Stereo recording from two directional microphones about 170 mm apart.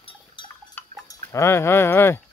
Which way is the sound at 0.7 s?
10° left (ahead or behind).